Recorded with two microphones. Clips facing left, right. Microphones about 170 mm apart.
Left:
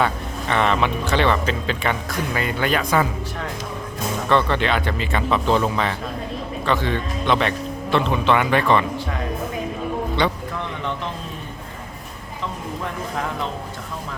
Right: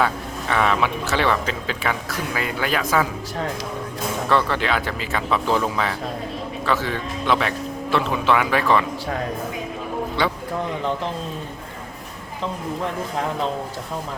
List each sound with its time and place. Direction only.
0.0 s speech: centre (ahead or behind)
4.3 s speech: 5° right (ahead or behind)
10.2 s speech: 5° right (ahead or behind)